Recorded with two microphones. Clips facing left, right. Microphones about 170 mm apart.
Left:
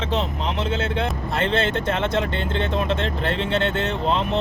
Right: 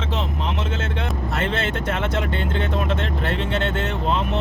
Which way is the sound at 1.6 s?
30° left (ahead or behind).